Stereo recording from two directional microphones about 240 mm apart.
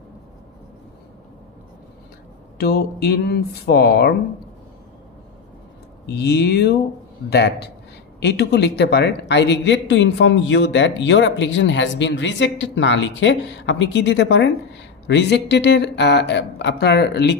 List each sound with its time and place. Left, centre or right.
2.5 s speech: left
6.0 s speech: left